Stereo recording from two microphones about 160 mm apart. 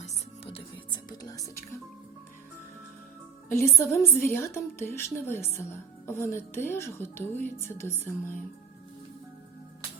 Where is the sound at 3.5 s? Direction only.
15° left (ahead or behind).